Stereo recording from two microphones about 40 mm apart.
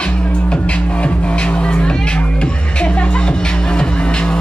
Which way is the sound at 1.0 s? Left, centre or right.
Left.